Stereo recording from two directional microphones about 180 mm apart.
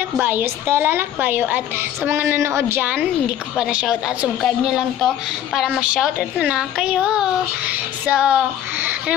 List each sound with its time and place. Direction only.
0.2 s a woman's voice: 10° right (ahead or behind)